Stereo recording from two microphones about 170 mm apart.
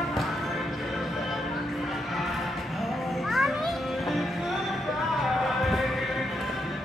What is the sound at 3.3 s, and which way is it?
Music, centre (ahead or behind).